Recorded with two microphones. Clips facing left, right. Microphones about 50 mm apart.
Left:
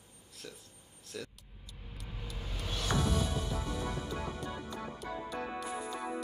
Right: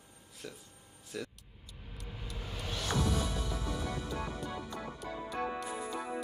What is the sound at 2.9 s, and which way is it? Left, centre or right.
Music, left.